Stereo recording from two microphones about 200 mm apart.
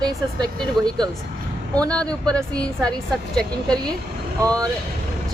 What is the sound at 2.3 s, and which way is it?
Speech, 20° right (ahead or behind).